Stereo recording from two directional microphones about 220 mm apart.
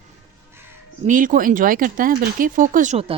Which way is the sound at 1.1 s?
35° right (ahead or behind).